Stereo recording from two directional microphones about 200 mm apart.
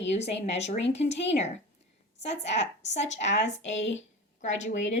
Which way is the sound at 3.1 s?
35° left (ahead or behind).